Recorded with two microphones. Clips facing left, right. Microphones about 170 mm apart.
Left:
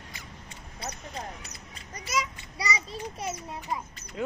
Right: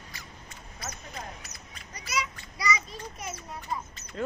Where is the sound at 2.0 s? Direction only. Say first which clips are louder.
Left 2 dB; 45° left (ahead or behind).